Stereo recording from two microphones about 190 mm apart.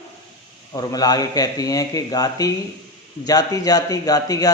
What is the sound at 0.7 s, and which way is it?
Speech, 20° left (ahead or behind).